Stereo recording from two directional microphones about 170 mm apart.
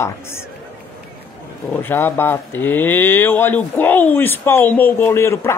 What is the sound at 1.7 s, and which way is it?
Speech, 10° left (ahead or behind).